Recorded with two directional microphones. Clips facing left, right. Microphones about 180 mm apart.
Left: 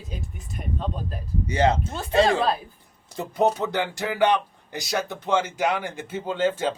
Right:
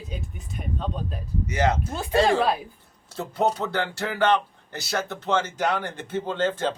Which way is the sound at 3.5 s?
15° left (ahead or behind).